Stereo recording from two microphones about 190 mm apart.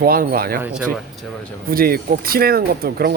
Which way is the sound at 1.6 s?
50° right (ahead or behind).